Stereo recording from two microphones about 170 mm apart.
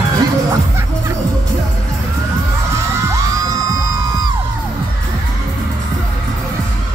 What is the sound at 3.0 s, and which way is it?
Music, 20° right (ahead or behind).